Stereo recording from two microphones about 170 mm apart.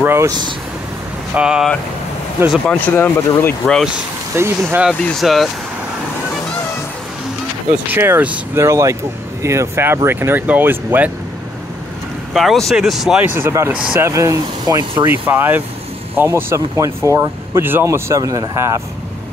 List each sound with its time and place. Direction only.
0.0 s speech: 15° right (ahead or behind)
1.3 s speech: 5° right (ahead or behind)
2.7 s speech: 10° left (ahead or behind)
3.6 s speech: centre (ahead or behind)
4.4 s speech: 15° right (ahead or behind)
4.8 s speech: centre (ahead or behind)
7.7 s speech: 10° right (ahead or behind)
12.4 s speech: centre (ahead or behind)
13.4 s speech: 15° right (ahead or behind)
15.2 s speech: 10° right (ahead or behind)